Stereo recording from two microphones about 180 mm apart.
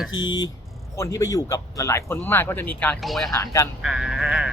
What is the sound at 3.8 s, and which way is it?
Speech, centre (ahead or behind).